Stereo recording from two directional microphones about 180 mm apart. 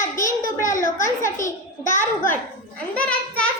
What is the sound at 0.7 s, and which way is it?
Speech, 15° left (ahead or behind).